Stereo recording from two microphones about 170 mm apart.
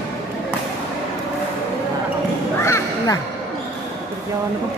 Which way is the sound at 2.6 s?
15° left (ahead or behind).